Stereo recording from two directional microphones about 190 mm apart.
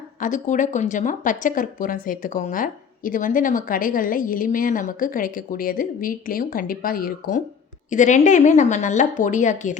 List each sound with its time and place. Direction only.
0.2 s speech: 40° left (ahead or behind)